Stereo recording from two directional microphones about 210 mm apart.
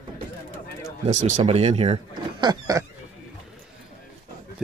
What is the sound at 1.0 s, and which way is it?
Speech, 30° right (ahead or behind).